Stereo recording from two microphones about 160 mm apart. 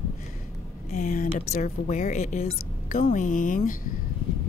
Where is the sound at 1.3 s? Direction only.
40° left (ahead or behind); by 3.8 s 60° left (ahead or behind).